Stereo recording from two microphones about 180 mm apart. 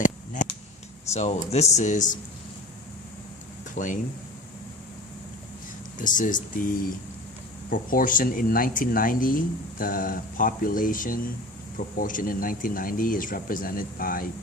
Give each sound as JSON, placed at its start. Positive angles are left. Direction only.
{"t": 1.1, "sound": "speech", "side_deg": 35}
{"t": 3.8, "sound": "speech", "side_deg": 45}
{"t": 6.0, "sound": "speech", "side_deg": 45}
{"t": 7.7, "sound": "speech", "side_deg": 50}